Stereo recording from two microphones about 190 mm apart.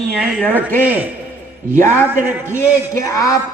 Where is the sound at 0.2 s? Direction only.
10° left (ahead or behind).